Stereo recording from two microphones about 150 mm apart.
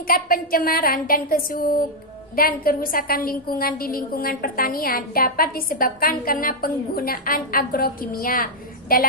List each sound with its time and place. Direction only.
0.1 s a woman's voice: 75° left (ahead or behind)